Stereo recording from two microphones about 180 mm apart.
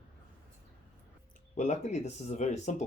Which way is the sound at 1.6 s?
40° left (ahead or behind).